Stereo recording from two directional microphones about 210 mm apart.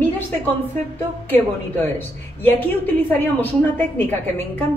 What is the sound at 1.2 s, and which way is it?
A woman's voice, 10° left (ahead or behind).